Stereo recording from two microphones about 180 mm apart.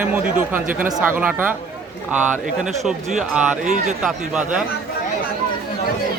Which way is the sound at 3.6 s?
40° right (ahead or behind).